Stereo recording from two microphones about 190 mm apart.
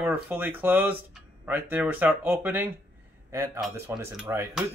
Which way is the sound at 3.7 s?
10° right (ahead or behind).